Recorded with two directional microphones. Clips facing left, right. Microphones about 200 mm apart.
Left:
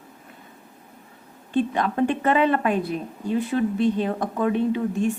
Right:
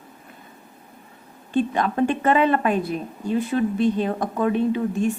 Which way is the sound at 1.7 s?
40° right (ahead or behind).